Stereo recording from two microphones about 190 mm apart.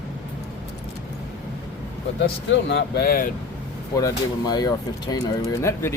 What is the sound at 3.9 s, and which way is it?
Speech, 20° left (ahead or behind).